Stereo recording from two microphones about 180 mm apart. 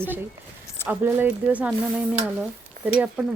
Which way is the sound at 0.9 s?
10° right (ahead or behind).